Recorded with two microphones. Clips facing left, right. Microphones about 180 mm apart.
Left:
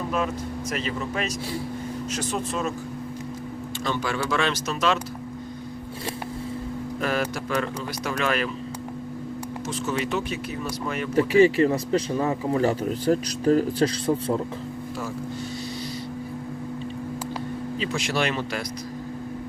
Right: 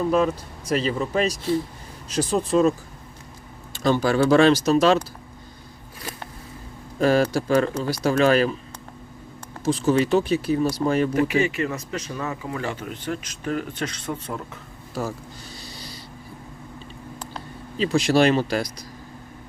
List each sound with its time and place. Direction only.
0.7 s speech: 35° right (ahead or behind)
3.8 s speech: 35° right (ahead or behind)
7.0 s speech: 30° right (ahead or behind)
9.6 s speech: 35° right (ahead or behind)
11.1 s speech: 30° left (ahead or behind)
17.7 s speech: 35° right (ahead or behind)